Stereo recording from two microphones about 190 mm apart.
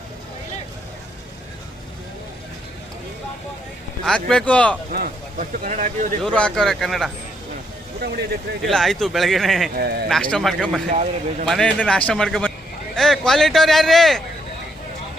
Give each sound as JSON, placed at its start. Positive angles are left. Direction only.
{"t": 4.0, "sound": "a man's voice", "side_deg": 5}
{"t": 4.9, "sound": "speech", "side_deg": -45}
{"t": 6.2, "sound": "a man's voice", "side_deg": 5}
{"t": 8.0, "sound": "speech", "side_deg": -55}
{"t": 8.6, "sound": "a man's voice", "side_deg": 0}
{"t": 9.7, "sound": "speech", "side_deg": -60}
{"t": 10.1, "sound": "a man's voice", "side_deg": 5}
{"t": 10.9, "sound": "a man's voice", "side_deg": -40}
{"t": 11.4, "sound": "a man's voice", "side_deg": 5}